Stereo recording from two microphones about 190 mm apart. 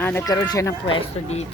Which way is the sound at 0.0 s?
10° left (ahead or behind).